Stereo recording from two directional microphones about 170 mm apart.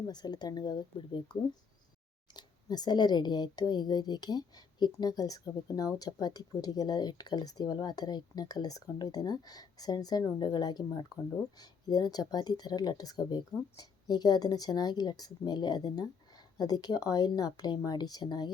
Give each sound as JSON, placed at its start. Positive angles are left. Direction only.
{"t": 0.1, "sound": "speech", "side_deg": 25}